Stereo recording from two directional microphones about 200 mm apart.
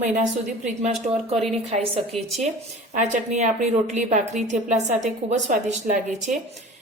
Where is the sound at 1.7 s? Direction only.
30° right (ahead or behind).